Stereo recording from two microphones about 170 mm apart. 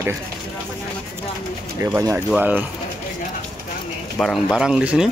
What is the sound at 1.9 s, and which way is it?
Speech, 10° right (ahead or behind).